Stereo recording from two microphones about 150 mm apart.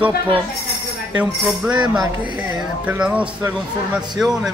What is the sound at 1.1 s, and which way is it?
Speech, 10° right (ahead or behind).